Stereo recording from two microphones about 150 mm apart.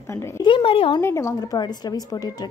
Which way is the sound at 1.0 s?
20° left (ahead or behind).